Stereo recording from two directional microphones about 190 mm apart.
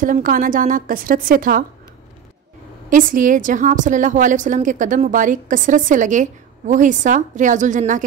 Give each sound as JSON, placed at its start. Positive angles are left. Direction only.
{"t": 0.0, "sound": "a woman's voice", "side_deg": -45}
{"t": 2.9, "sound": "a woman's voice", "side_deg": -45}